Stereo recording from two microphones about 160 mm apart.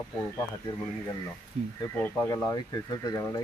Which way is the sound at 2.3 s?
20° left (ahead or behind).